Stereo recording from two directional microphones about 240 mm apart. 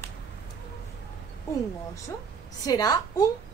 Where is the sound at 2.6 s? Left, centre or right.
Centre.